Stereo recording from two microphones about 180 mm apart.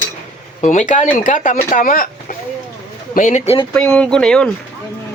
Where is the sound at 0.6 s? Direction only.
40° left (ahead or behind).